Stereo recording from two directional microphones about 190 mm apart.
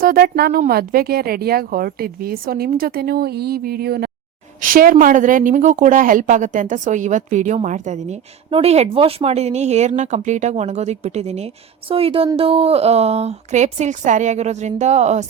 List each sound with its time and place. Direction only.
0.0 s speech: 50° right (ahead or behind)